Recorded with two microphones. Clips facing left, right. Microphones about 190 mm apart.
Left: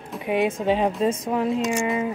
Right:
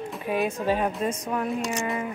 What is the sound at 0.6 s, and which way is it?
Speech, 25° left (ahead or behind).